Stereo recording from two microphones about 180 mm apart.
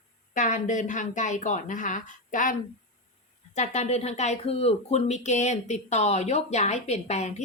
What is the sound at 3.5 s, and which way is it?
Speech, 40° left (ahead or behind).